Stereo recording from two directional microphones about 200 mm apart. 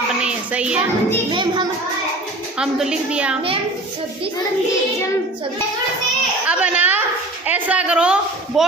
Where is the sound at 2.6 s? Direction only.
Centre (ahead or behind).